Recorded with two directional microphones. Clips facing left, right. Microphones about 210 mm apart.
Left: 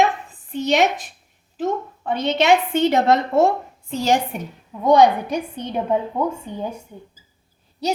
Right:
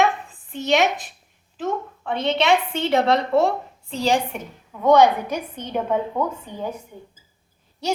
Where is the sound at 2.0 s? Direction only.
40° left (ahead or behind).